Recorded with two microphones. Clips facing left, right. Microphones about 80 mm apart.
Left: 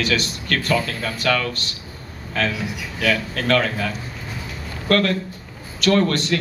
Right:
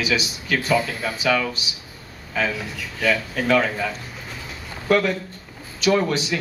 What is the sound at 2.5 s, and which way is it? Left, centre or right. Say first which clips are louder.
Speech: left 2 dB; centre.